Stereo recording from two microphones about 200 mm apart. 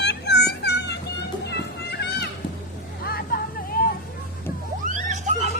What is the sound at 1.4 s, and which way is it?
Music, 55° left (ahead or behind).